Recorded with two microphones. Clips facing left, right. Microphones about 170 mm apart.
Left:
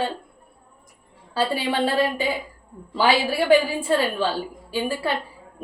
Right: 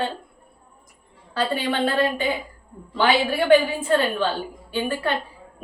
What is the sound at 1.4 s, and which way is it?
A woman's voice, 10° left (ahead or behind).